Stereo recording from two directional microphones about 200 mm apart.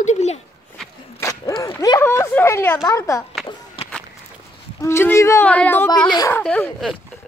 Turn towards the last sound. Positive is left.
turn(degrees=5)  # may be behind; listen again after turning